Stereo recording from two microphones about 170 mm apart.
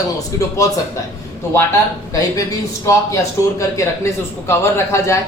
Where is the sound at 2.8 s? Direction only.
20° left (ahead or behind).